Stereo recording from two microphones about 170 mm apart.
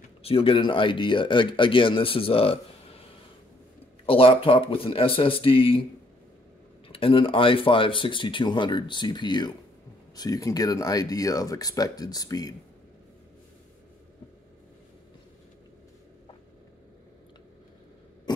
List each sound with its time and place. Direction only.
0.2 s speech: 35° left (ahead or behind)
6.9 s speech: 30° left (ahead or behind)